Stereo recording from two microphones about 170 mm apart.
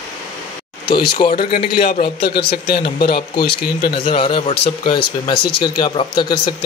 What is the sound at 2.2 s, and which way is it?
A man's voice, 70° left (ahead or behind).